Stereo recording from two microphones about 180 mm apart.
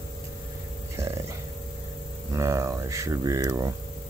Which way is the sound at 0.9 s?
15° right (ahead or behind).